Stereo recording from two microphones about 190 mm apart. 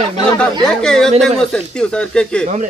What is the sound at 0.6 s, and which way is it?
Speech, 5° left (ahead or behind).